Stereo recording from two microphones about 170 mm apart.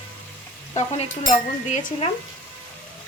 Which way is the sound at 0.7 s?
40° left (ahead or behind).